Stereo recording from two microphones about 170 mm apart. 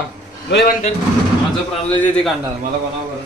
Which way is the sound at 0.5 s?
70° left (ahead or behind).